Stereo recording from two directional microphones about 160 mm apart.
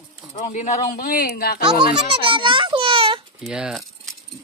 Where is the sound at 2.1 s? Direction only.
30° right (ahead or behind).